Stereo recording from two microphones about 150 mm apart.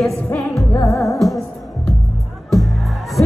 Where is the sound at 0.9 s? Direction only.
20° left (ahead or behind).